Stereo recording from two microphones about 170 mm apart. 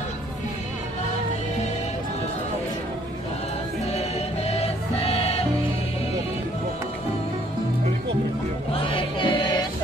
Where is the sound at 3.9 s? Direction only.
40° left (ahead or behind).